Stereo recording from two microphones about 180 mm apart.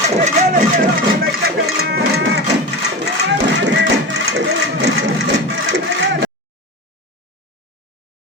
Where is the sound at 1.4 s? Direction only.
60° right (ahead or behind).